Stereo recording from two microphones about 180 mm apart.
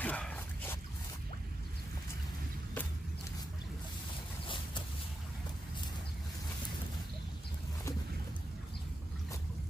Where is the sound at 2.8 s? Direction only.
10° left (ahead or behind).